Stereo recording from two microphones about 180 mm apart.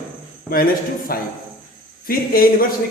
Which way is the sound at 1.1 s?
55° left (ahead or behind).